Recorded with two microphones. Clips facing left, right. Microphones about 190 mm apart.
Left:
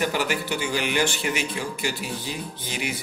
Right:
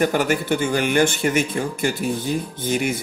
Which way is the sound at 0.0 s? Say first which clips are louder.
Right 6 dB; 50° right (ahead or behind).